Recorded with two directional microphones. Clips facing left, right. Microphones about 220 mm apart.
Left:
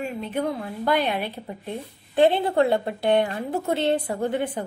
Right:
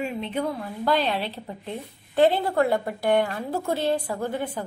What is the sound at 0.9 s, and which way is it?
A woman's voice, 15° left (ahead or behind).